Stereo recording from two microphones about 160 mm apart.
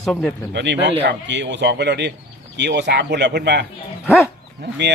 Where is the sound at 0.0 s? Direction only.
5° left (ahead or behind).